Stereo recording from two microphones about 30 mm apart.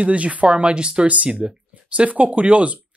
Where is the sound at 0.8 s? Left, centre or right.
Right.